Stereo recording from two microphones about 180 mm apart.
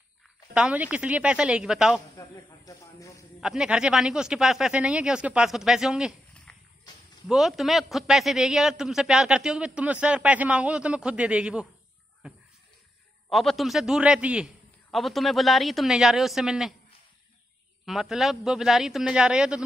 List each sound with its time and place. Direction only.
0.6 s a man's voice: 5° right (ahead or behind)
2.1 s speech: 20° left (ahead or behind)
3.3 s a man's voice: 5° right (ahead or behind)
13.3 s a man's voice: centre (ahead or behind)
17.8 s a man's voice: centre (ahead or behind)